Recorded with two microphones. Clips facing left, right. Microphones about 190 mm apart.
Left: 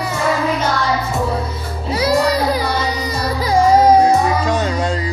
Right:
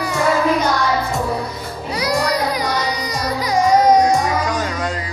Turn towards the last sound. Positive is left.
turn(degrees=25)  # may be behind; listen again after turning